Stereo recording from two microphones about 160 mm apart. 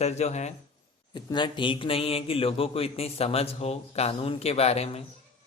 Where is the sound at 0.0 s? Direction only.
45° left (ahead or behind).